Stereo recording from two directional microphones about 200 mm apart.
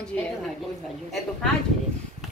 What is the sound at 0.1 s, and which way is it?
Speech, 5° left (ahead or behind).